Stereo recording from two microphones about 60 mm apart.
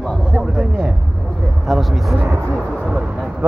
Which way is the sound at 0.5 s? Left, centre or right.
Centre.